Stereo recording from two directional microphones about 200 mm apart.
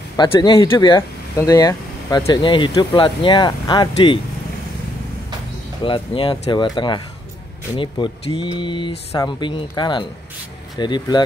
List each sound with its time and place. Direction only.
0.2 s speech: 20° left (ahead or behind)
5.9 s speech: 25° left (ahead or behind)